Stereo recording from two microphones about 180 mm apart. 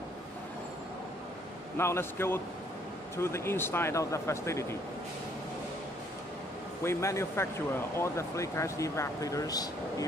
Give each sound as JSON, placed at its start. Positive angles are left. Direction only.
{"t": 1.8, "sound": "speech", "side_deg": 15}
{"t": 6.8, "sound": "speech", "side_deg": 15}